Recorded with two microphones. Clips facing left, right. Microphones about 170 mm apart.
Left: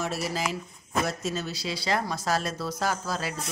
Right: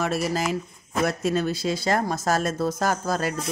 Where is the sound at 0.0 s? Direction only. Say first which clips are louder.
Right 5 dB; 55° right (ahead or behind).